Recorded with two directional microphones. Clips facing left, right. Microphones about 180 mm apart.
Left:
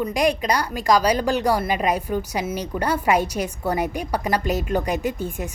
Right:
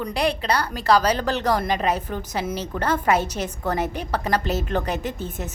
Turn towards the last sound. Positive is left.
turn(degrees=10)  # may be behind; listen again after turning